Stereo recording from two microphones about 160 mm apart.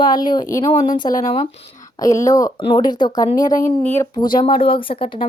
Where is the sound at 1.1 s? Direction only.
55° left (ahead or behind).